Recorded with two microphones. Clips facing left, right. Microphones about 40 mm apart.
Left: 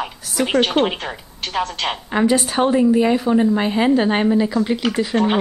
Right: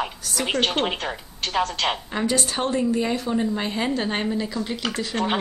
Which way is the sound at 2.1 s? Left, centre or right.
Centre.